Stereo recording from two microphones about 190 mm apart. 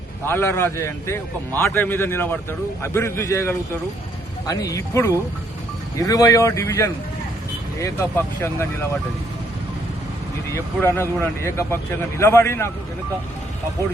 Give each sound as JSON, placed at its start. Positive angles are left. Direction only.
{"t": 0.3, "sound": "a man's voice", "side_deg": 10}
{"t": 10.5, "sound": "a man's voice", "side_deg": 10}